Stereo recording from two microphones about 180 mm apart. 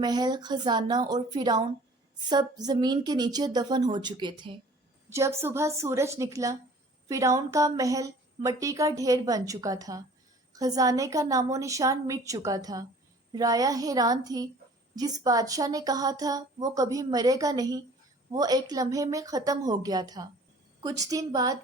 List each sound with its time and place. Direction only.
0.0 s a woman's voice: 25° right (ahead or behind)
5.0 s a woman's voice: 15° right (ahead or behind)